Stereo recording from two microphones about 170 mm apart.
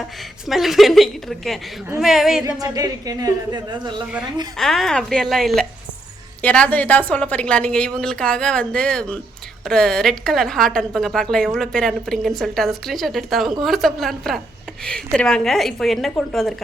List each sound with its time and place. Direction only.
0.4 s a woman's voice: centre (ahead or behind)
2.4 s a woman's voice: 20° right (ahead or behind)
4.5 s a woman's voice: centre (ahead or behind)